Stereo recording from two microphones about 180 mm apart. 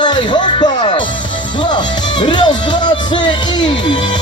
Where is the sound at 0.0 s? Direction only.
25° left (ahead or behind).